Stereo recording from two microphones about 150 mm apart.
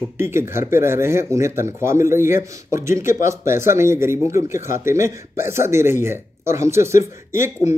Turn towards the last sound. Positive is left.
turn(degrees=-20)  # may be behind; listen again after turning